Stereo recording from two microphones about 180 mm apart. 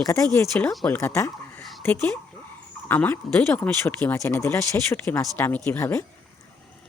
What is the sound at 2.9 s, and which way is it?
Speech, 10° left (ahead or behind).